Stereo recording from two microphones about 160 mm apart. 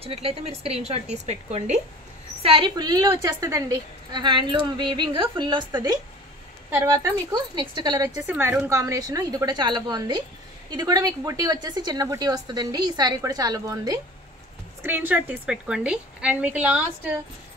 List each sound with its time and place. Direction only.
0.0 s a woman's voice: 40° right (ahead or behind)
2.4 s a woman's voice: 30° right (ahead or behind)
6.7 s a woman's voice: 15° right (ahead or behind)
8.3 s a woman's voice: 15° right (ahead or behind)
14.8 s a woman's voice: 10° right (ahead or behind)